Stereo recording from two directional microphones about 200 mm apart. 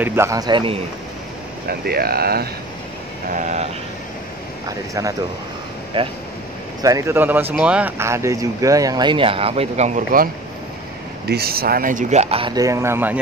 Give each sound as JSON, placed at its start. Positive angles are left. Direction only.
{"t": 0.0, "sound": "speech", "side_deg": -10}
{"t": 1.7, "sound": "speech", "side_deg": -50}
{"t": 3.3, "sound": "speech", "side_deg": -40}
{"t": 4.6, "sound": "speech", "side_deg": -15}